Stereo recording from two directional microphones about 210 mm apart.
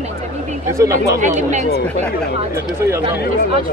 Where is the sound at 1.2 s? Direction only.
35° right (ahead or behind).